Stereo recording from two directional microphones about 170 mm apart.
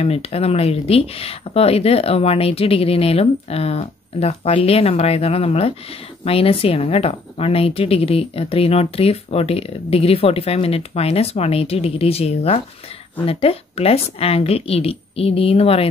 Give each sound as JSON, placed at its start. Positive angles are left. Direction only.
{"t": 0.0, "sound": "speech", "side_deg": 35}